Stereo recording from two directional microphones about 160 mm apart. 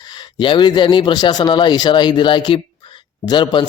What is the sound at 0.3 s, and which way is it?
Speech, 30° left (ahead or behind).